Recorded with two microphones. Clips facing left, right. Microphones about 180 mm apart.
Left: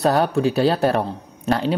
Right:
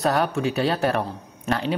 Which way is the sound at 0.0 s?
35° left (ahead or behind).